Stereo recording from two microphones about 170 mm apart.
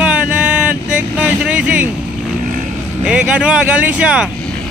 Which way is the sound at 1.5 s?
5° right (ahead or behind).